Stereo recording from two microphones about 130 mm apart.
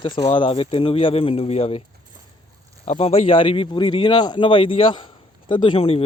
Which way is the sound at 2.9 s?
50° left (ahead or behind).